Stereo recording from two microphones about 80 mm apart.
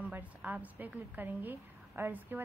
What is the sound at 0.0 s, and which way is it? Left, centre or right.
A woman's voice, centre.